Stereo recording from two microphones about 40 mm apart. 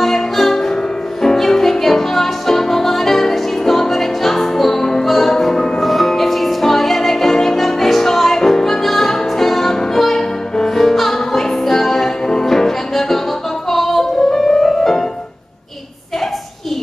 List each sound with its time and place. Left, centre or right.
0.0 s music: centre